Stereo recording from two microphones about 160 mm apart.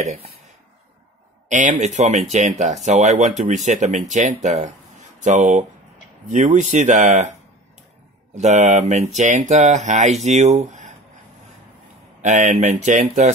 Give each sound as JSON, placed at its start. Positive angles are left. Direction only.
{"t": 0.0, "sound": "speech", "side_deg": -45}
{"t": 1.5, "sound": "speech", "side_deg": -50}
{"t": 8.4, "sound": "speech", "side_deg": -45}
{"t": 12.2, "sound": "speech", "side_deg": -50}